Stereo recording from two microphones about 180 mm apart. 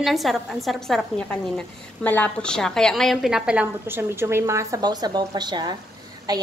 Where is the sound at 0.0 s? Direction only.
Centre (ahead or behind).